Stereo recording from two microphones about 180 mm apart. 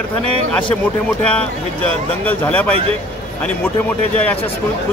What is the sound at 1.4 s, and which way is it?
Speech, 10° left (ahead or behind).